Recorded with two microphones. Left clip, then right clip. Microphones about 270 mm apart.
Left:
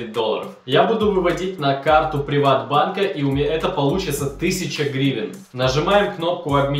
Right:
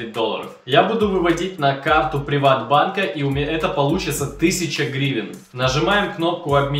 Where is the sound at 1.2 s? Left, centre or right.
Centre.